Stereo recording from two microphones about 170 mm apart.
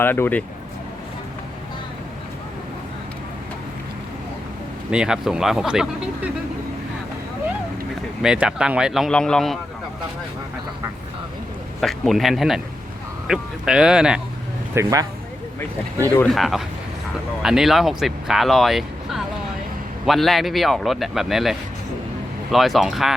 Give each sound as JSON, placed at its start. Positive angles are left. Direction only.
{"t": 0.0, "sound": "speech", "side_deg": 10}
{"t": 4.9, "sound": "speech", "side_deg": -5}
{"t": 8.2, "sound": "speech", "side_deg": -5}
{"t": 11.8, "sound": "speech", "side_deg": 0}
{"t": 14.8, "sound": "speech", "side_deg": -20}
{"t": 16.0, "sound": "speech", "side_deg": 10}
{"t": 22.5, "sound": "speech", "side_deg": 0}